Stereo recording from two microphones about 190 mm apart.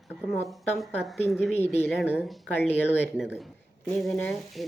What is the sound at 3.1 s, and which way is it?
A woman's voice, 5° right (ahead or behind).